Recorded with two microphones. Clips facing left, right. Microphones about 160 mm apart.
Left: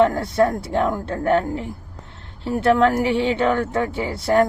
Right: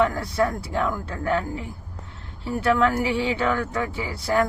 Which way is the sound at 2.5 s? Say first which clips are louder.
Left 4 dB; 25° left (ahead or behind).